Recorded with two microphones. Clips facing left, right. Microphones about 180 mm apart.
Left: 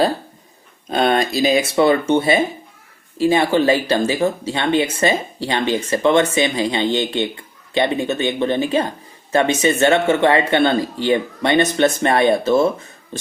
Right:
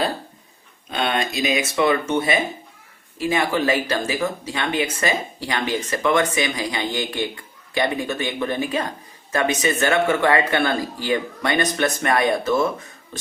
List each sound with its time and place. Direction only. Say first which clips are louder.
0.9 s speech: left 6 dB; 40° left (ahead or behind)